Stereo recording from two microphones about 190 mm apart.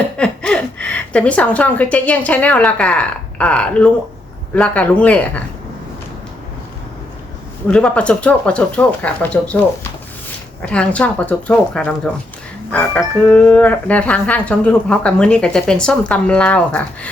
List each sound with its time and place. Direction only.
0.2 s a woman's voice: 5° left (ahead or behind)
7.7 s speech: 5° left (ahead or behind)
10.7 s speech: 5° left (ahead or behind)